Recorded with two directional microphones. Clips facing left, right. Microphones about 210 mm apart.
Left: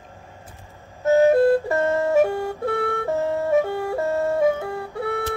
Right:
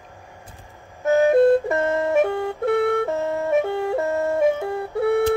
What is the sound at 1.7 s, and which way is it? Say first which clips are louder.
Music: left 1 dB; 20° right (ahead or behind).